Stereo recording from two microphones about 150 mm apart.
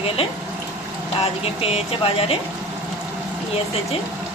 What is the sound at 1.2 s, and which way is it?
Speech, 45° left (ahead or behind).